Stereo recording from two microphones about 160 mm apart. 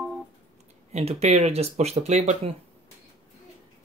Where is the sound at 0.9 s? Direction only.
40° right (ahead or behind).